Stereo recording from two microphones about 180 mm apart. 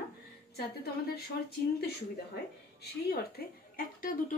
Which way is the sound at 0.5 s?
60° left (ahead or behind).